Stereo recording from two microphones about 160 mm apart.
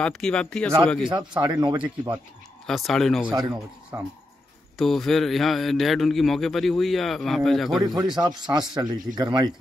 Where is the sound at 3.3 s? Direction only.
25° right (ahead or behind).